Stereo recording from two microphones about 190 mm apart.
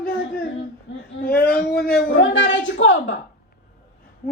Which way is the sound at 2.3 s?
75° left (ahead or behind).